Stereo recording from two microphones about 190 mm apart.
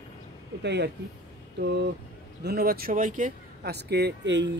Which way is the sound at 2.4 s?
55° right (ahead or behind).